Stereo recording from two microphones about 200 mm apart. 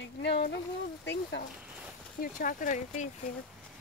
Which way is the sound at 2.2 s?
45° left (ahead or behind).